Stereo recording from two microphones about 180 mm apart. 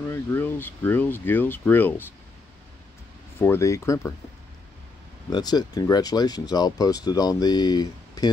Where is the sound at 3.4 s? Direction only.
15° left (ahead or behind).